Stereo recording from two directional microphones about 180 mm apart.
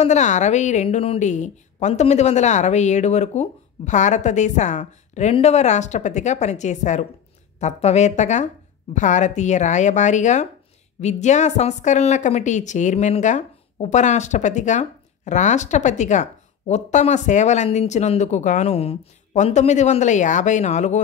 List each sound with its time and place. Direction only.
0.0 s a woman's voice: 40° left (ahead or behind)